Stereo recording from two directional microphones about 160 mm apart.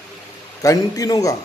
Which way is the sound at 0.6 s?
20° left (ahead or behind).